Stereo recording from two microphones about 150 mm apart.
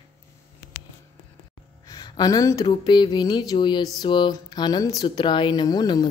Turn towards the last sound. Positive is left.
turn(degrees=25)  # may be behind; listen again after turning